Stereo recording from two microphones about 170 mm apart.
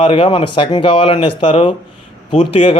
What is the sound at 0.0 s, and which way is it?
Speech, 30° left (ahead or behind).